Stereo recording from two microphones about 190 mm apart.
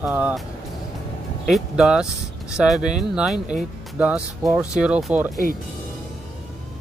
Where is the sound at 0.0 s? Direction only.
5° right (ahead or behind).